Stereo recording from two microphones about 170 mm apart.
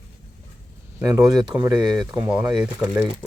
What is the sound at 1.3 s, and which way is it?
Speech, 25° right (ahead or behind).